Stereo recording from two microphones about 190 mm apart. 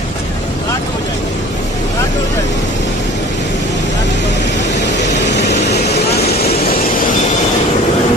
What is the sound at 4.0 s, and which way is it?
Vehicle, 65° left (ahead or behind).